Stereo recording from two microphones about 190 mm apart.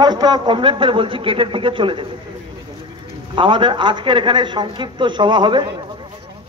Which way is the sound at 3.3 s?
25° right (ahead or behind).